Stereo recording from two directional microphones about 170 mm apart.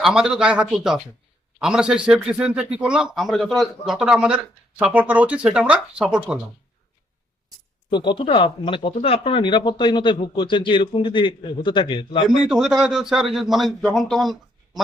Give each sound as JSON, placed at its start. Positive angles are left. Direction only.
{"t": 0.0, "sound": "a man's voice", "side_deg": -5}
{"t": 7.9, "sound": "speech", "side_deg": 25}
{"t": 12.3, "sound": "a man's voice", "side_deg": -5}